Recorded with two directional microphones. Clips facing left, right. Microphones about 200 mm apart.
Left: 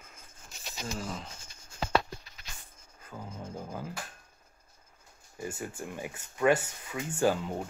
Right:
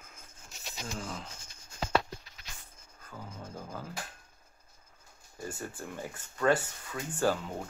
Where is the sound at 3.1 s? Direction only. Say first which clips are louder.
Left 3 dB; 15° left (ahead or behind).